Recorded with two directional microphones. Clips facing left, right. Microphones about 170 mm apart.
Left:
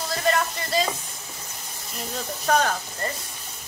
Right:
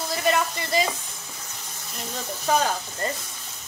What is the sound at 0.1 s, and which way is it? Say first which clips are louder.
Speech: even; 15° right (ahead or behind).